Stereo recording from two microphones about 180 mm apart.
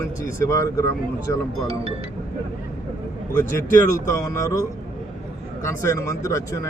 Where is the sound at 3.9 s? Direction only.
15° left (ahead or behind).